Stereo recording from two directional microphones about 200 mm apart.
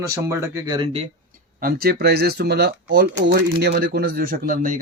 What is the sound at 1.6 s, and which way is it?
Speech, 50° right (ahead or behind).